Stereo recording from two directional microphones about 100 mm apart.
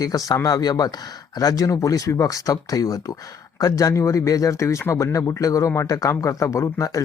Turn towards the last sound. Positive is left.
turn(degrees=35)  # may be behind; listen again after turning